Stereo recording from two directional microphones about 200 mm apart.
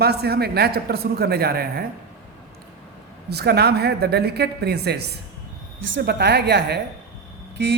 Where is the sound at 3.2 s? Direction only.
55° right (ahead or behind).